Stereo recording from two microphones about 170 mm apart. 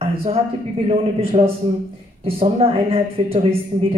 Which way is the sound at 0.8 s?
35° right (ahead or behind).